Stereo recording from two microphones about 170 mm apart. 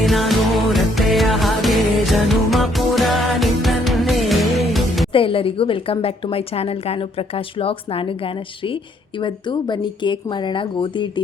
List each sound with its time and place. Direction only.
0.0 s music: centre (ahead or behind)
5.1 s a woman's voice: 30° left (ahead or behind)